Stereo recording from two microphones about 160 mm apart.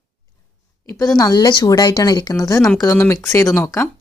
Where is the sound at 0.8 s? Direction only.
20° left (ahead or behind).